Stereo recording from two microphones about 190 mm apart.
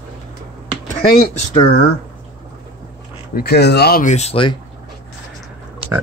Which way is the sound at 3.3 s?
55° left (ahead or behind).